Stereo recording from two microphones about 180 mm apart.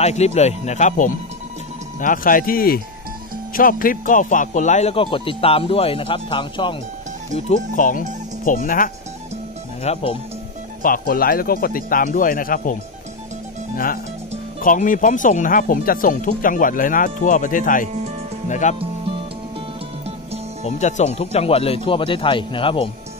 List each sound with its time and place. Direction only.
0.0 s a man's voice: 35° left (ahead or behind)
7.7 s speech: 45° left (ahead or behind)
9.9 s a man's voice: 35° left (ahead or behind)
10.8 s speech: 50° left (ahead or behind)
14.6 s a man's voice: 45° left (ahead or behind)
20.6 s a man's voice: 40° left (ahead or behind)